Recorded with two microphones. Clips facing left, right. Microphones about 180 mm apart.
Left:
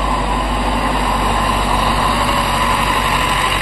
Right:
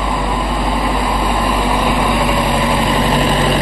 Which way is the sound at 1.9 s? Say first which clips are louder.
Right 3 dB; 20° right (ahead or behind).